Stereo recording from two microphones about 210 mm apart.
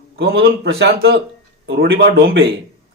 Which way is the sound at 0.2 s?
50° right (ahead or behind).